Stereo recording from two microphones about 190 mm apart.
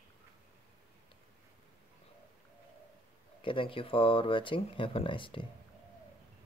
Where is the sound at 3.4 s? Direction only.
25° left (ahead or behind).